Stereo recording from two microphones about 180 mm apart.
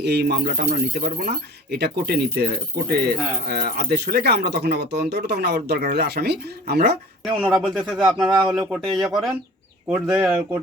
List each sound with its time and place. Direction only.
0.0 s speech: 65° right (ahead or behind)
0.7 s speech: 50° right (ahead or behind)
1.7 s speech: 65° right (ahead or behind)
7.4 s speech: centre (ahead or behind)